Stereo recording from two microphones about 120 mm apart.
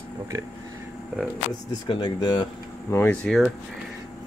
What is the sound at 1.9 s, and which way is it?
Speech, 40° left (ahead or behind).